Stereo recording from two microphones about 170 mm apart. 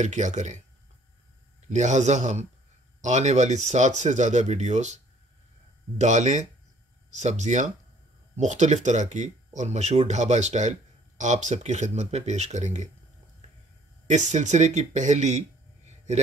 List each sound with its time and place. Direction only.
0.0 s speech: 45° right (ahead or behind)
1.7 s speech: 45° right (ahead or behind)
14.0 s speech: 45° right (ahead or behind)